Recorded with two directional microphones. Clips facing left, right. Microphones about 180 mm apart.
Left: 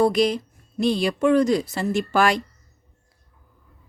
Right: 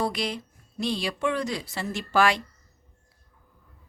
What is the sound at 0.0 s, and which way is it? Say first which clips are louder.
Speech: left 10 dB; 45° left (ahead or behind).